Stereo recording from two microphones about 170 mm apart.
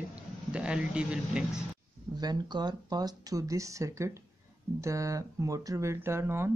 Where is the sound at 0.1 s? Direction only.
5° right (ahead or behind).